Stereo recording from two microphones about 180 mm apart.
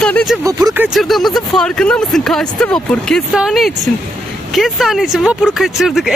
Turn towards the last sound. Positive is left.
turn(degrees=0)  # may be behind; listen again after turning